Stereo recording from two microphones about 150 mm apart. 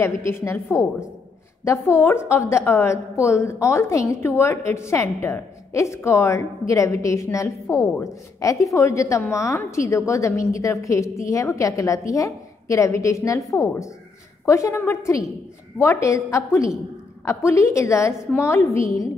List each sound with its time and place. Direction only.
0.0 s a woman's voice: 20° left (ahead or behind)
14.4 s a woman's voice: 20° left (ahead or behind)